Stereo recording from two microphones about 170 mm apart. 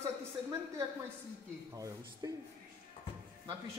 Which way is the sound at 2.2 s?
20° right (ahead or behind).